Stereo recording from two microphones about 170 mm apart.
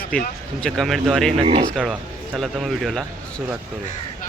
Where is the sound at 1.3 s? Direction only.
35° right (ahead or behind).